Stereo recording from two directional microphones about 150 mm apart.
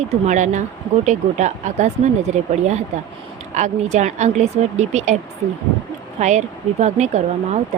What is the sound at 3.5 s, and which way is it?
A woman's voice, 50° right (ahead or behind).